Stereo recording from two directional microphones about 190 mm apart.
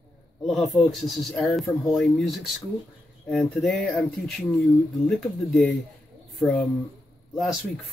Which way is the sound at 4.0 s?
Centre (ahead or behind).